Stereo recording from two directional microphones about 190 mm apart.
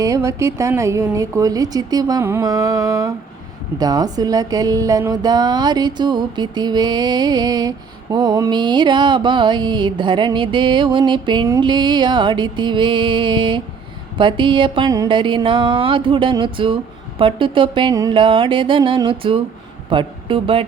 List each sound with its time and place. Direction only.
0.0 s a woman's voice: 15° right (ahead or behind)
3.8 s music: 20° right (ahead or behind)
19.9 s speech: 25° right (ahead or behind)